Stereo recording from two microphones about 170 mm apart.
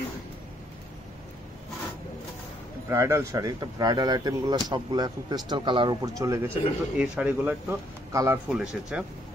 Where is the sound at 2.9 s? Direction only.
15° right (ahead or behind).